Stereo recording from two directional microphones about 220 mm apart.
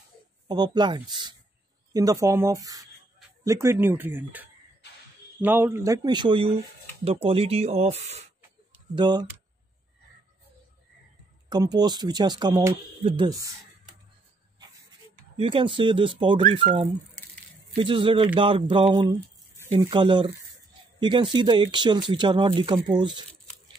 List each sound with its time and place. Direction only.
0.5 s speech: 20° right (ahead or behind)
8.9 s speech: 20° right (ahead or behind)
11.4 s speech: 20° right (ahead or behind)
15.3 s speech: 25° right (ahead or behind)
16.5 s speech: 35° right (ahead or behind)